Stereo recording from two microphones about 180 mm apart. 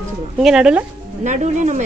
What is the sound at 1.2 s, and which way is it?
Speech, 45° right (ahead or behind).